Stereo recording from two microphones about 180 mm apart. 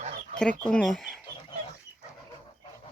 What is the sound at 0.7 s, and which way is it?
Speech, 5° left (ahead or behind).